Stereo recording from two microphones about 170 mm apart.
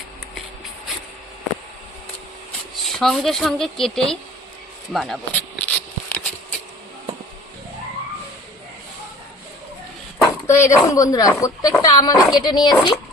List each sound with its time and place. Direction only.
2.8 s speech: centre (ahead or behind)
5.4 s a sound: 10° left (ahead or behind)
10.4 s speech: 15° left (ahead or behind)